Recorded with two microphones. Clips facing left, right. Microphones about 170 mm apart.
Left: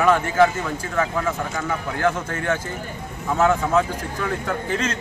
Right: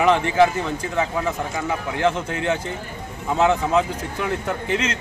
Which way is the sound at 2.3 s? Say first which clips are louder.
Right 1 dB; 15° right (ahead or behind).